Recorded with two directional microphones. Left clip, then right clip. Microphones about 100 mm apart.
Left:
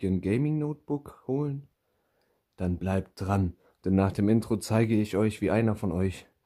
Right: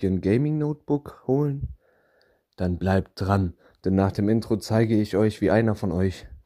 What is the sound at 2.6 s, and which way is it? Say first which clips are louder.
Speech: right 6 dB; 40° right (ahead or behind).